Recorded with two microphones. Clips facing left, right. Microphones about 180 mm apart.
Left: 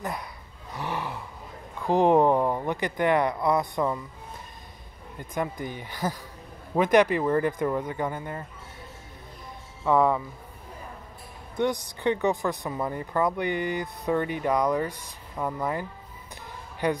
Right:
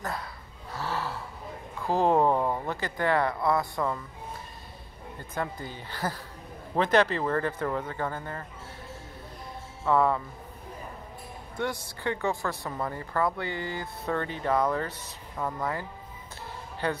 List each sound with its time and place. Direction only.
0.0 s speech: 15° left (ahead or behind)
0.7 s a sound: 15° left (ahead or behind)
1.9 s speech: 15° left (ahead or behind)
5.3 s speech: 15° left (ahead or behind)
9.8 s speech: 15° left (ahead or behind)
11.5 s speech: 15° left (ahead or behind)
16.8 s speech: 15° left (ahead or behind)